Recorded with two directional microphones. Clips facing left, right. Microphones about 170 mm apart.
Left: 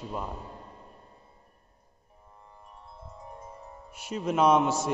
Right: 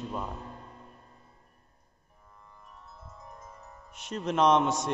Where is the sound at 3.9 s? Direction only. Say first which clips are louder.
Left 2 dB; 10° left (ahead or behind).